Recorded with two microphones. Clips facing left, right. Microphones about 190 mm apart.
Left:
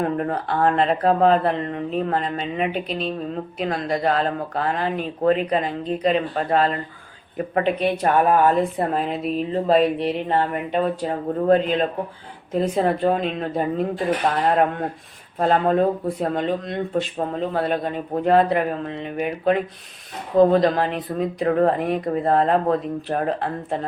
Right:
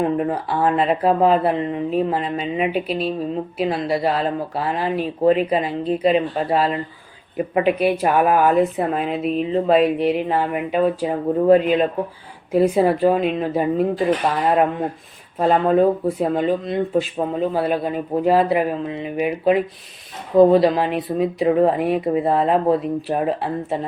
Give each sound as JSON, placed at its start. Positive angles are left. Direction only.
{"t": 0.2, "sound": "speech", "side_deg": -5}